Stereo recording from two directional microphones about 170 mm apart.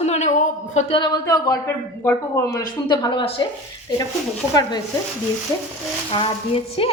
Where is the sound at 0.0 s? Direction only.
40° left (ahead or behind).